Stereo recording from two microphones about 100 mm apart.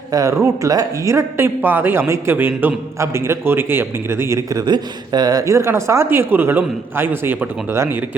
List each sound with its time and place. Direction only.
0.1 s speech: 35° right (ahead or behind)